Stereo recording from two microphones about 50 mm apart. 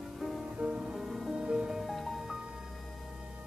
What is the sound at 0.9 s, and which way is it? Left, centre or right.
Music, centre.